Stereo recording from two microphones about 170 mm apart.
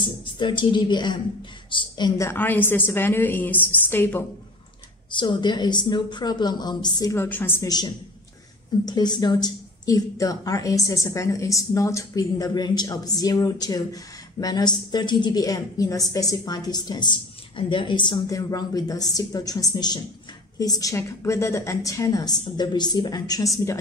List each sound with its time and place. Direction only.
0.0 s a woman's voice: 30° left (ahead or behind); by 4.3 s 10° left (ahead or behind)
5.1 s a woman's voice: 30° left (ahead or behind); by 7.7 s 10° left (ahead or behind)
8.8 s a woman's voice: 25° left (ahead or behind)